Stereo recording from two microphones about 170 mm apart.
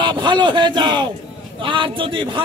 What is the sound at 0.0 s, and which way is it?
Speech, 25° right (ahead or behind).